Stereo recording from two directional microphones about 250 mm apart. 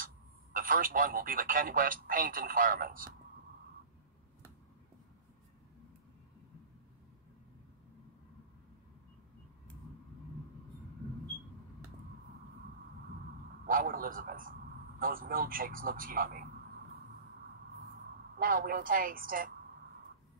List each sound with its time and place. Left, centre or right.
0.0 s a man's voice: right
13.7 s a man's voice: right
18.4 s a man's voice: right